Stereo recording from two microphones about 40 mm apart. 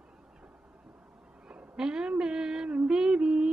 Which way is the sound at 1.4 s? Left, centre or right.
Centre.